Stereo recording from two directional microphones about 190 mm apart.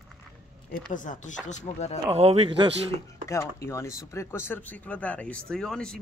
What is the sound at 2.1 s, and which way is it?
Speech, 30° right (ahead or behind).